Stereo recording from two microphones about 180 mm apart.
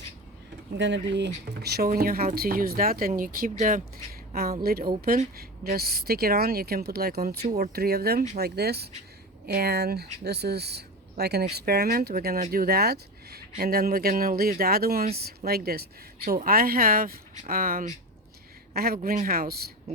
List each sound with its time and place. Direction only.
0.8 s speech: 80° right
1.5 s a woman's voice: 65° right (ahead or behind)